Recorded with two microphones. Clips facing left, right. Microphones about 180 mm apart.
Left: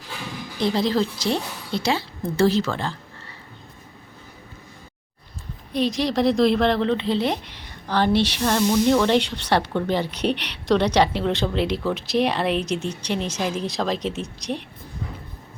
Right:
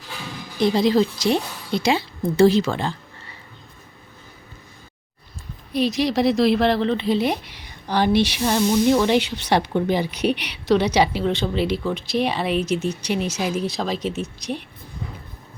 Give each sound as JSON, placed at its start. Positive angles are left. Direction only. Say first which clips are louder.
{"t": 0.6, "sound": "speech", "louder": "right 4 dB", "side_deg": -15}
{"t": 5.7, "sound": "speech", "louder": "right 2 dB", "side_deg": -10}